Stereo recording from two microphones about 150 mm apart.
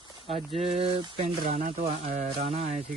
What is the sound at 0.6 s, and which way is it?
Speech, 40° right (ahead or behind).